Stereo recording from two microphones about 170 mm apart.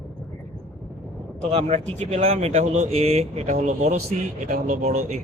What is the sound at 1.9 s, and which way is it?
Speech, 40° right (ahead or behind).